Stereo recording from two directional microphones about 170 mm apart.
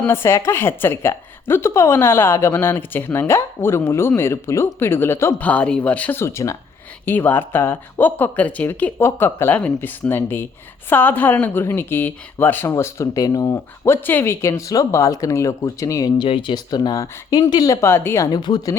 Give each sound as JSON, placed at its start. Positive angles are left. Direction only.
{"t": 0.0, "sound": "a woman's voice", "side_deg": 15}